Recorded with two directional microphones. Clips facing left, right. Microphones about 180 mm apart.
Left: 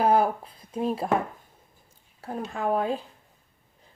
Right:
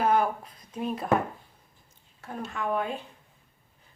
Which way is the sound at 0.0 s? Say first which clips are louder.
Left 3 dB; 35° left (ahead or behind).